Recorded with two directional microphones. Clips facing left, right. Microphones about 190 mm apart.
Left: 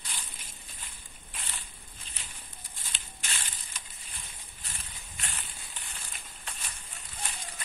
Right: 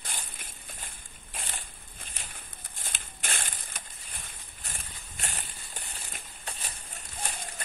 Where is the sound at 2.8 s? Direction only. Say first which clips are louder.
Right 4 dB; 50° right (ahead or behind).